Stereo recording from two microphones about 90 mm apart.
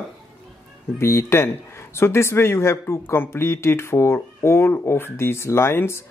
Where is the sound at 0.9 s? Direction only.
30° left (ahead or behind).